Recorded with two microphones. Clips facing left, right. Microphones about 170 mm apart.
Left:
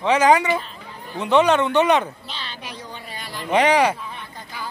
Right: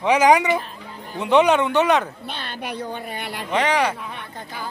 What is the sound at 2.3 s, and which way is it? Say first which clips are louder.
A woman's voice: right 5 dB; 55° right (ahead or behind).